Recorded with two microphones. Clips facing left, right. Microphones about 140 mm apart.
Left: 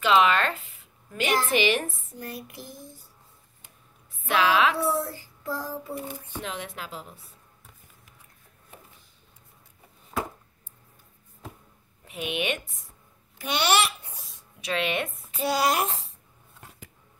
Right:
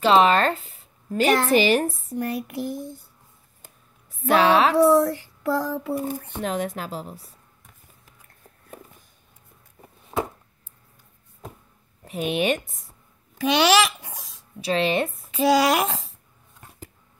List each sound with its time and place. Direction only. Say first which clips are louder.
0.0 s a woman's voice: right 4 dB; 35° right (ahead or behind)
2.1 s a sound: right 13 dB; 65° right (ahead or behind)
4.3 s speech: right 5 dB; 35° right (ahead or behind)
4.7 s speech: right 11 dB; 75° right (ahead or behind)
6.0 s speech: right 8 dB; 50° right (ahead or behind)
10.1 s chopping: right 4 dB; 25° right (ahead or behind)
12.0 s speech: right 6 dB; 40° right (ahead or behind)
13.4 s a child's voice: right 6 dB; 90° right
14.6 s speech: right 6 dB; 30° right (ahead or behind)
15.3 s speech: right 6 dB; 90° right